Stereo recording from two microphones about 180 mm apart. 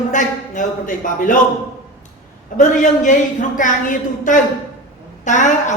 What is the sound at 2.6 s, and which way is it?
A woman's voice, 45° left (ahead or behind).